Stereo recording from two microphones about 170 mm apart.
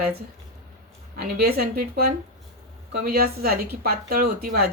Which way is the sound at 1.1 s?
60° right (ahead or behind).